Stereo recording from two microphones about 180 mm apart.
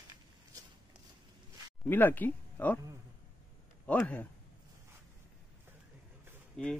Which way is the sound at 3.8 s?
10° left (ahead or behind).